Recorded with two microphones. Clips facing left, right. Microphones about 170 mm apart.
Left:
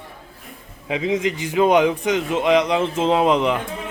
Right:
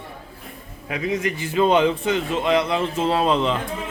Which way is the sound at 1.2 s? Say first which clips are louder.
Even; 15° left (ahead or behind).